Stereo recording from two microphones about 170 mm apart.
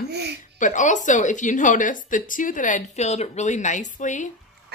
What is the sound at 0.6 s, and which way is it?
A woman's voice, 45° left (ahead or behind).